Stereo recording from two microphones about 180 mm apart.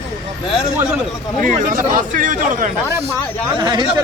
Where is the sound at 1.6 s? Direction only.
50° right (ahead or behind).